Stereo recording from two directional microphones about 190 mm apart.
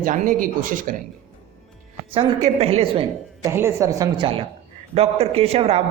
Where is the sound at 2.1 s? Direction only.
30° right (ahead or behind).